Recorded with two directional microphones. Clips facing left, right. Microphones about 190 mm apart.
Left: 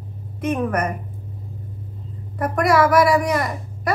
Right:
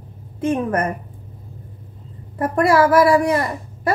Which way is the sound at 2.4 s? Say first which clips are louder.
Right 2 dB; 30° right (ahead or behind).